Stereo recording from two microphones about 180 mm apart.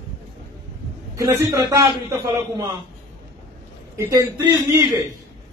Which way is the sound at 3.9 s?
20° right (ahead or behind).